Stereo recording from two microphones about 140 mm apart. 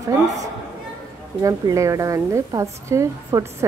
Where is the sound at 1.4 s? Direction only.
25° right (ahead or behind).